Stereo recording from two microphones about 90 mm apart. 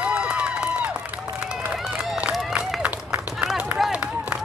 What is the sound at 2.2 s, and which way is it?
Run, 15° right (ahead or behind).